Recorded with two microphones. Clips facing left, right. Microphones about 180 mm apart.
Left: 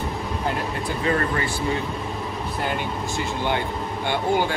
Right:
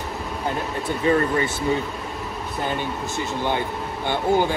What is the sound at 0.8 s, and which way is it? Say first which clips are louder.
Speech: right 4 dB; 20° right (ahead or behind).